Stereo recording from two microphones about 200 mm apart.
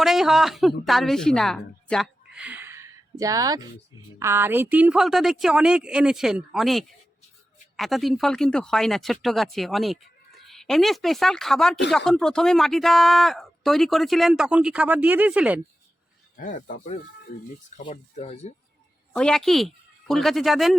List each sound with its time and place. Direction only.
0.0 s a woman's voice: centre (ahead or behind)
16.4 s speech: 40° left (ahead or behind)
17.9 s speech: 35° left (ahead or behind)
19.1 s speech: 5° left (ahead or behind)